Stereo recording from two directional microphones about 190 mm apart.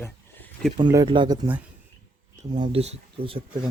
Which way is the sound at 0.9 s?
20° right (ahead or behind).